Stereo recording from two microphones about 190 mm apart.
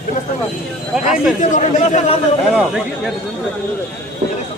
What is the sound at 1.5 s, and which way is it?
Speech, 40° left (ahead or behind).